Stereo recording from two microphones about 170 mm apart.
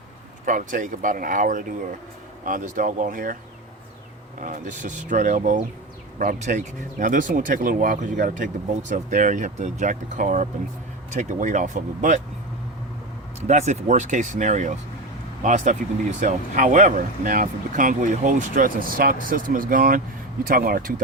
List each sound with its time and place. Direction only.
0.4 s speech: 50° right (ahead or behind)
4.4 s speech: 50° right (ahead or behind)
13.5 s speech: 40° right (ahead or behind); by 20.9 s 55° right (ahead or behind)